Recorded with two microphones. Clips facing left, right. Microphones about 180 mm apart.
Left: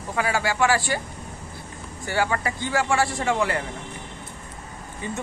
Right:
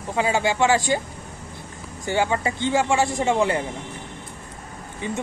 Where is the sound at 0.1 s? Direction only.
20° right (ahead or behind).